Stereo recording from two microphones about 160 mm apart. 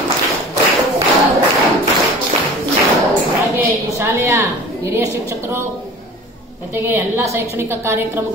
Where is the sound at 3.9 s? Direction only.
15° right (ahead or behind).